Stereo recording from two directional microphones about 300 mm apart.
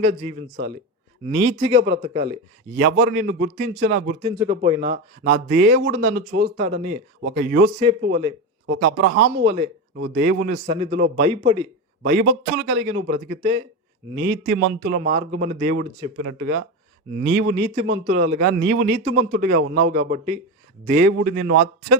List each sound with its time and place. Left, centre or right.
0.0 s a man's voice: right
2.7 s a man's voice: right
4.2 s speech: centre
5.2 s a man's voice: right
7.8 s a man's voice: right
8.6 s a man's voice: right
9.4 s a man's voice: centre
9.9 s a man's voice: right; by 11.7 s centre
12.0 s a man's voice: right
15.0 s a man's voice: right